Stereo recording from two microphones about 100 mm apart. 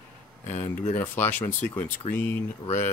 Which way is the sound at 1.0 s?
20° left (ahead or behind).